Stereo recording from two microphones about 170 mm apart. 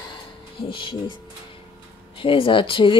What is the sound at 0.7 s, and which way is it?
Speech, 30° left (ahead or behind).